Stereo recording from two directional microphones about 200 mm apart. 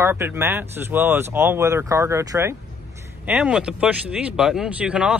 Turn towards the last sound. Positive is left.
turn(degrees=-5)  # may be behind; listen again after turning